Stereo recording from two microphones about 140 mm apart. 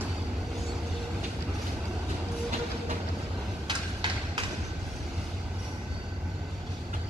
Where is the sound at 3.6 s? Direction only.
35° right (ahead or behind).